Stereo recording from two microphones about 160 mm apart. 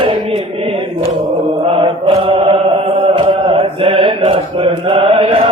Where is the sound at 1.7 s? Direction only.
35° right (ahead or behind).